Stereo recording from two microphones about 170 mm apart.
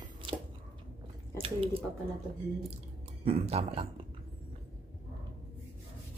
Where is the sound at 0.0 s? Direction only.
30° right (ahead or behind).